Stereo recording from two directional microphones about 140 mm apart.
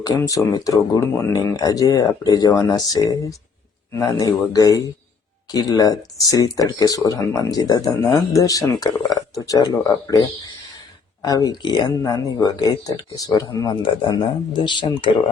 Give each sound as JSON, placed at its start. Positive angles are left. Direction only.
{"t": 0.0, "sound": "speech", "side_deg": 25}